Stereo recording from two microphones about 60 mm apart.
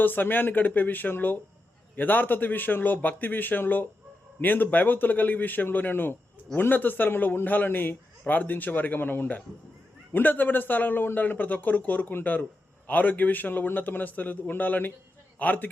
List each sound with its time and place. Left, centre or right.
0.0 s a man's voice: left